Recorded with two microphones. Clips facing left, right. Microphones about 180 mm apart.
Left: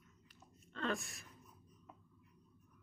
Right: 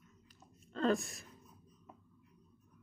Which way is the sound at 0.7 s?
40° right (ahead or behind).